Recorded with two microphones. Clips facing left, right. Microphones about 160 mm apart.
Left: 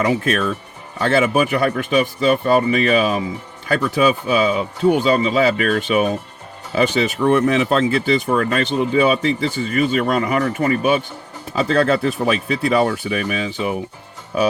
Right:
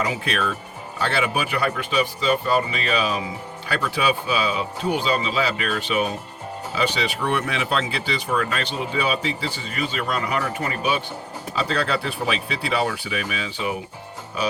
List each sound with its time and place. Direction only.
0.0 s speech: 45° left (ahead or behind)